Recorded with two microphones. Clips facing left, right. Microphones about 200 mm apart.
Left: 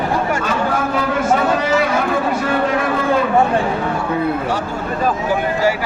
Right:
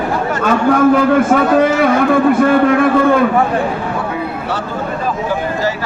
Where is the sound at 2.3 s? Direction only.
55° right (ahead or behind).